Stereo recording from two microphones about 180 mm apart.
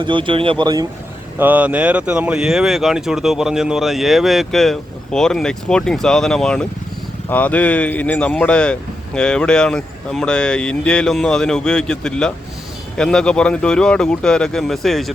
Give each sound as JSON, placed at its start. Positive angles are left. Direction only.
{"t": 0.0, "sound": "speech", "side_deg": -25}
{"t": 1.4, "sound": "speech", "side_deg": -10}